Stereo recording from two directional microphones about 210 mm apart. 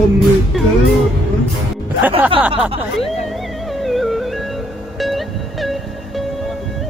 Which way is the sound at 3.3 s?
Centre (ahead or behind).